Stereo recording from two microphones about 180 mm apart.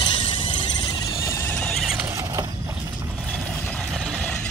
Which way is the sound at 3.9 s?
5° left (ahead or behind).